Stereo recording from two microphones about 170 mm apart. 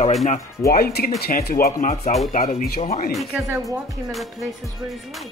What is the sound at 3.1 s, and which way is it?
Speech, centre (ahead or behind).